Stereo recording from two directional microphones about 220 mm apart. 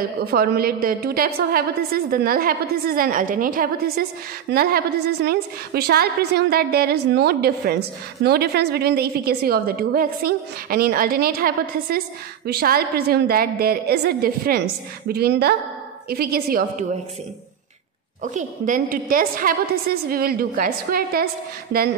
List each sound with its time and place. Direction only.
0.2 s a woman's voice: 45° right (ahead or behind)
18.2 s a woman's voice: 35° right (ahead or behind)